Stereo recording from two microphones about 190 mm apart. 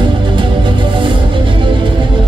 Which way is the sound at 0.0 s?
25° right (ahead or behind).